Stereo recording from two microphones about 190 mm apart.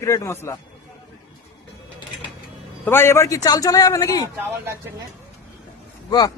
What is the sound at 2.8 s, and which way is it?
A man's voice, 10° left (ahead or behind).